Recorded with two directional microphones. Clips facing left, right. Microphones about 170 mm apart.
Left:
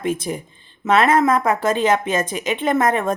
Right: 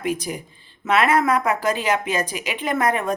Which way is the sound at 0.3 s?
35° left (ahead or behind).